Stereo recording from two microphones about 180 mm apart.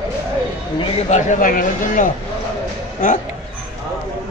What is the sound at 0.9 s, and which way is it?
Speech, 40° left (ahead or behind).